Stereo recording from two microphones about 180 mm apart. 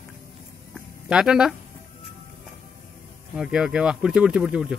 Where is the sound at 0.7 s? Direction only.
5° right (ahead or behind).